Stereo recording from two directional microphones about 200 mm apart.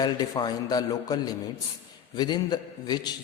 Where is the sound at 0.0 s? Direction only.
20° left (ahead or behind).